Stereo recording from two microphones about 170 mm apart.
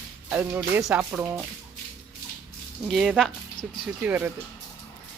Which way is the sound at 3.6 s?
25° left (ahead or behind).